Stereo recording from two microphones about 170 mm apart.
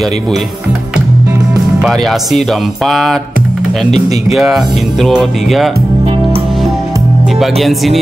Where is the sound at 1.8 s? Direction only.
Centre (ahead or behind).